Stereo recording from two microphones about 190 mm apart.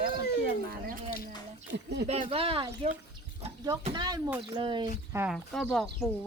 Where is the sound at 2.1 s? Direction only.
30° right (ahead or behind).